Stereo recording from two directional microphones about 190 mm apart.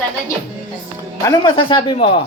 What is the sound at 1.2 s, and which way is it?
Speech, 25° left (ahead or behind).